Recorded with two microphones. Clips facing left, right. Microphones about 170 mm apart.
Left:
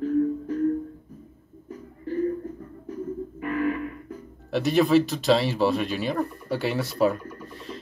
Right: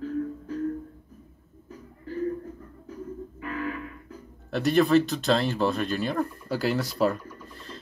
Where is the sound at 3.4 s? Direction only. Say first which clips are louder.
Left 6 dB; 50° left (ahead or behind).